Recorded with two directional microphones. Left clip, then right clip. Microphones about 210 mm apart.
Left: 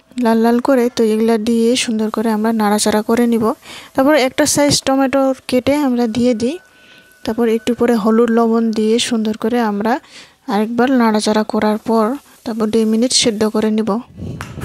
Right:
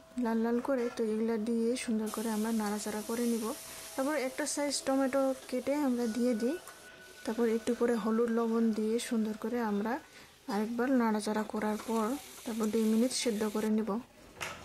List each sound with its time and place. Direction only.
0.2 s speech: 40° left (ahead or behind)